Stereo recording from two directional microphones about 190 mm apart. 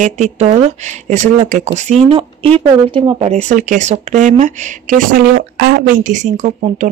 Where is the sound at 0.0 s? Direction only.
35° right (ahead or behind).